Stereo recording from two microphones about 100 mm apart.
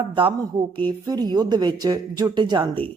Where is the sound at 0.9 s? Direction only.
40° right (ahead or behind).